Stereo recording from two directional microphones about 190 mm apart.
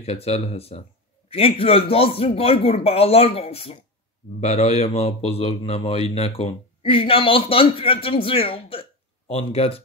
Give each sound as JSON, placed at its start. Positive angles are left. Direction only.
{"t": 0.0, "sound": "a man's voice", "side_deg": 35}